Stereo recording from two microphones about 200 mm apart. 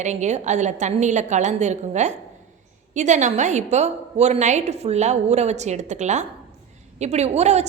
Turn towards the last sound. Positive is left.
turn(degrees=-35)  # may be behind; listen again after turning